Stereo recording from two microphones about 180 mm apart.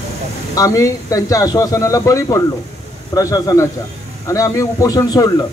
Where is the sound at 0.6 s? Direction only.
15° left (ahead or behind).